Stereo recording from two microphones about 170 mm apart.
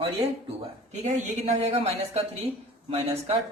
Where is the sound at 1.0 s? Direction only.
40° right (ahead or behind).